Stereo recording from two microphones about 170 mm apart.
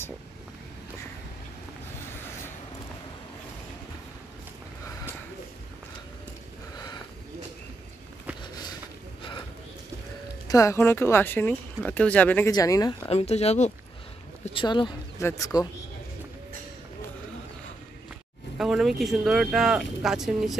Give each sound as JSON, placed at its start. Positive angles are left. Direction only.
{"t": 10.5, "sound": "speech", "side_deg": 20}
{"t": 12.4, "sound": "speech", "side_deg": 20}
{"t": 13.1, "sound": "speech", "side_deg": 40}
{"t": 18.6, "sound": "speech", "side_deg": 0}